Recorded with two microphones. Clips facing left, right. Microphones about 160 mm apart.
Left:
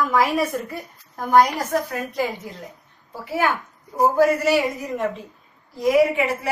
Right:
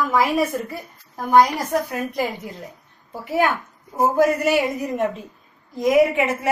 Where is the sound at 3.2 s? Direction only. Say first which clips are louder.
Right 2 dB; 20° right (ahead or behind).